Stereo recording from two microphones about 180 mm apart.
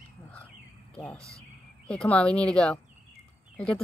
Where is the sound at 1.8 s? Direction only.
5° left (ahead or behind).